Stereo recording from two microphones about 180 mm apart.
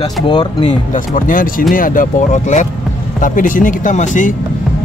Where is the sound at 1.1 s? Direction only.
50° left (ahead or behind).